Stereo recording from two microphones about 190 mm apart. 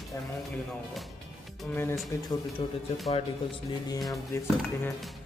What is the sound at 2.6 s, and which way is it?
A man's voice, 30° left (ahead or behind).